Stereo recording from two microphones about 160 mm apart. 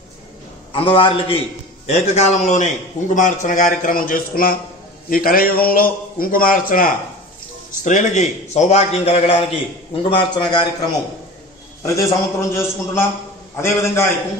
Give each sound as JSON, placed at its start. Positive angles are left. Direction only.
{"t": 0.7, "sound": "a man's voice", "side_deg": 35}
{"t": 7.8, "sound": "a man's voice", "side_deg": 50}
{"t": 11.8, "sound": "a man's voice", "side_deg": 20}